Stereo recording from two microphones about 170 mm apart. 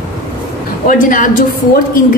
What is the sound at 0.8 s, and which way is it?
Speech, 50° left (ahead or behind).